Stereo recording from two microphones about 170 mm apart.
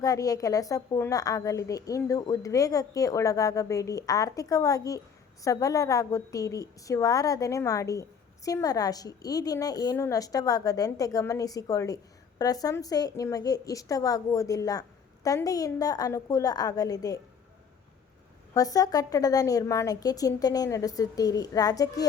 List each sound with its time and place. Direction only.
0.0 s a woman's voice: 20° left (ahead or behind)
18.5 s a woman's voice: 20° left (ahead or behind)